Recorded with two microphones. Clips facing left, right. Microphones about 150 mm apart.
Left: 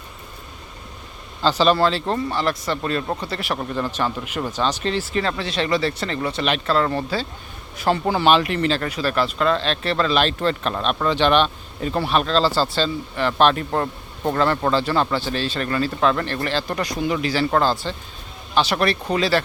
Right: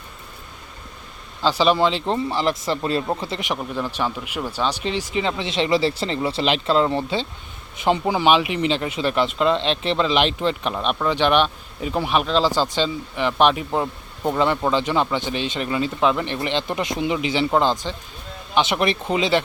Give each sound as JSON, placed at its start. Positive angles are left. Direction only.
{"t": 1.4, "sound": "speech", "side_deg": -10}
{"t": 3.6, "sound": "speech", "side_deg": -5}